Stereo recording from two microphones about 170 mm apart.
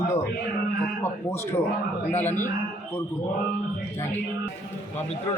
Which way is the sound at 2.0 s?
10° left (ahead or behind).